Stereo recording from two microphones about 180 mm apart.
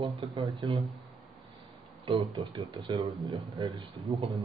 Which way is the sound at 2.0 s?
25° right (ahead or behind).